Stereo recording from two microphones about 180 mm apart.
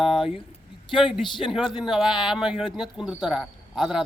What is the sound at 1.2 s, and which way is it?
Speech, 25° left (ahead or behind).